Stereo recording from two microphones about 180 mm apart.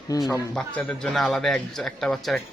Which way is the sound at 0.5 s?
5° left (ahead or behind).